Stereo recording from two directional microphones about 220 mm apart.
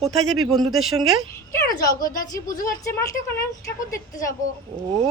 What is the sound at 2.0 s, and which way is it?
Speech, 40° left (ahead or behind).